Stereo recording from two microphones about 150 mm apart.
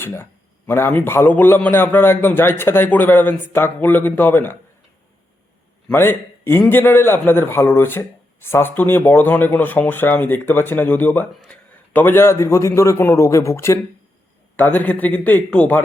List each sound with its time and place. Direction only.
0.0 s a man's voice: 15° left (ahead or behind)
5.9 s a man's voice: 15° left (ahead or behind)